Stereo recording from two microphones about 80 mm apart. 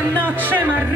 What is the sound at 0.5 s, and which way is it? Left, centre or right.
Music, right.